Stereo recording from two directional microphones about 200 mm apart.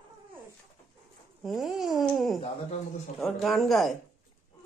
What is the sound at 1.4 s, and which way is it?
Speech, centre (ahead or behind).